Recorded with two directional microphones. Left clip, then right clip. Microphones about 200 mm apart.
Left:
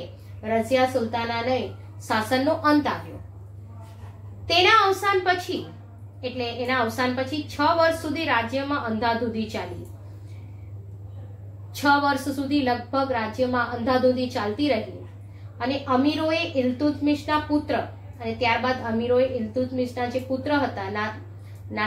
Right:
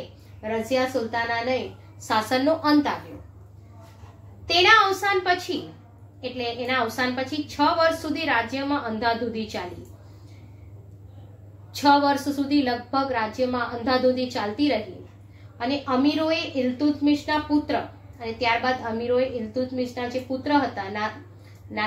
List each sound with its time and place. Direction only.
0.4 s a woman's voice: 25° right (ahead or behind)
4.5 s a woman's voice: 25° right (ahead or behind)
11.7 s a woman's voice: 25° right (ahead or behind)